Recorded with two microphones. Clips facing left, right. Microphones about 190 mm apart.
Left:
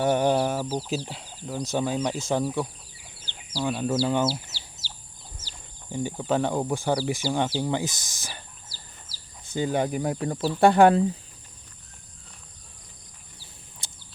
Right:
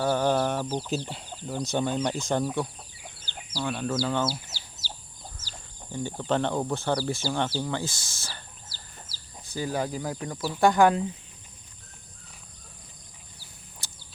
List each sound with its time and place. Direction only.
0.0 s speech: 20° left (ahead or behind)
3.6 s speech: 15° left (ahead or behind)
5.9 s speech: 10° left (ahead or behind)
9.5 s speech: 25° left (ahead or behind)
13.8 s bird: 25° left (ahead or behind)